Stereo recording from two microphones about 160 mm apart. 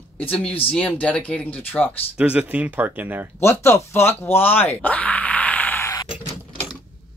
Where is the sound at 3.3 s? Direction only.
15° left (ahead or behind).